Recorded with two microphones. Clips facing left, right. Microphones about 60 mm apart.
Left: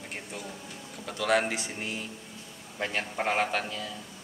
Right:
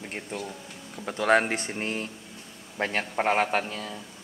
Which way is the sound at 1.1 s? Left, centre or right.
Right.